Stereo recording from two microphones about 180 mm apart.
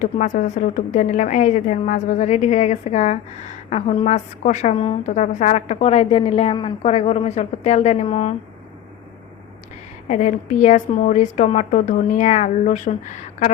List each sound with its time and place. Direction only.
0.0 s a woman's voice: 45° left (ahead or behind)
5.0 s a woman's voice: 45° left (ahead or behind)
10.1 s a woman's voice: 40° left (ahead or behind)